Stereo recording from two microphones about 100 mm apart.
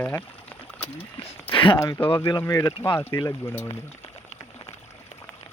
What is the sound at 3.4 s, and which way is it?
Speech, 20° left (ahead or behind).